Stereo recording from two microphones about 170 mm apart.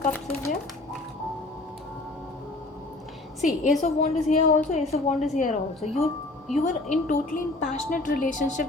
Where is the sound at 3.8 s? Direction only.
40° left (ahead or behind).